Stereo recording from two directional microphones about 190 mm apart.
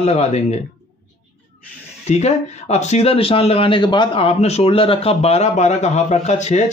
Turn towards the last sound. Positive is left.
turn(degrees=35)  # may be behind; listen again after turning